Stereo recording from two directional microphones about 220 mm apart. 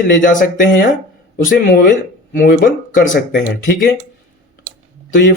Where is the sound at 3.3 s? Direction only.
50° left (ahead or behind).